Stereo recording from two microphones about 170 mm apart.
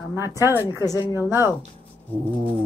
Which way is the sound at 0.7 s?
20° left (ahead or behind).